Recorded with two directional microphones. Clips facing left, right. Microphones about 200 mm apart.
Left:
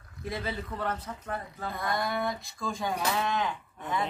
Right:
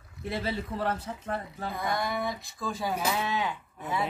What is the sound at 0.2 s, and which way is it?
Speech, 30° right (ahead or behind).